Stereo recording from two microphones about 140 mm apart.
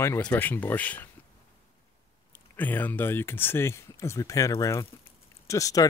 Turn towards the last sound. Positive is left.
turn(degrees=25)  # may be behind; listen again after turning